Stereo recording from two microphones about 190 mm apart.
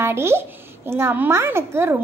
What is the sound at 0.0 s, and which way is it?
A child's voice, 15° right (ahead or behind).